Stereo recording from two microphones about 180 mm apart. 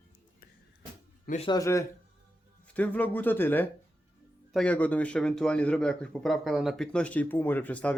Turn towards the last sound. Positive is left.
turn(degrees=5)  # may be behind; listen again after turning